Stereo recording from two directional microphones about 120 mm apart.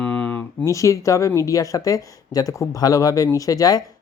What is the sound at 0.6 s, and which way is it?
Speech, 25° left (ahead or behind).